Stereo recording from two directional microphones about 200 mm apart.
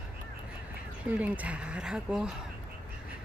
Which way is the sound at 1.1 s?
5° right (ahead or behind).